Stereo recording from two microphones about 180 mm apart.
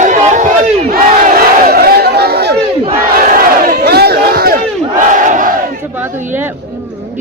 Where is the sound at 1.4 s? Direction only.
60° right (ahead or behind).